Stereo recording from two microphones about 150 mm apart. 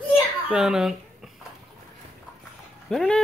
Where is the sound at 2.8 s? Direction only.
5° left (ahead or behind).